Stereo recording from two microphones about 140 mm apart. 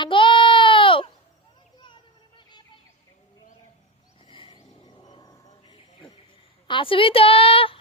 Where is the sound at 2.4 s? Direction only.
30° left (ahead or behind).